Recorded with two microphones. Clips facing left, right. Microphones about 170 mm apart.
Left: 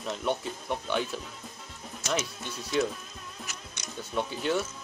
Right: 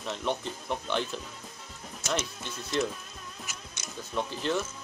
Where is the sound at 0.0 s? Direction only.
5° left (ahead or behind).